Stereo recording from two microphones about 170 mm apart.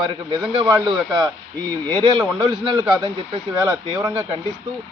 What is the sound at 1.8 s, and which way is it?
Speech, 25° right (ahead or behind).